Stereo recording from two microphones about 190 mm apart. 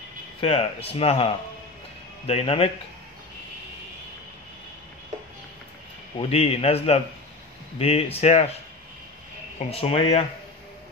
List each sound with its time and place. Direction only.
0.4 s a man's voice: 30° left (ahead or behind)
6.1 s a man's voice: 30° left (ahead or behind)
9.6 s a man's voice: 30° left (ahead or behind)